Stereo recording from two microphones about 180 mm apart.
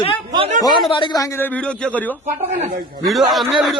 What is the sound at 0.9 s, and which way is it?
Speech, 25° left (ahead or behind).